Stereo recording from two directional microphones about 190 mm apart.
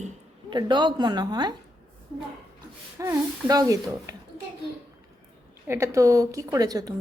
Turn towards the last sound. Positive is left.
turn(degrees=-20)  # may be behind; listen again after turning